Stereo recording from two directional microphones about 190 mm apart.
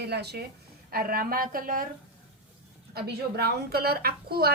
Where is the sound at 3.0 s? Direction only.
55° right (ahead or behind).